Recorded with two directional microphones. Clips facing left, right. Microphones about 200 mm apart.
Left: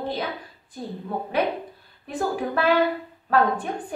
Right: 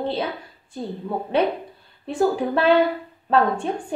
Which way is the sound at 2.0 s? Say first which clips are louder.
Right 5 dB; 30° right (ahead or behind).